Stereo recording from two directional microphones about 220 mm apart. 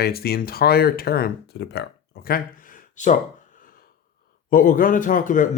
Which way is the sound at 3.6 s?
40° left (ahead or behind).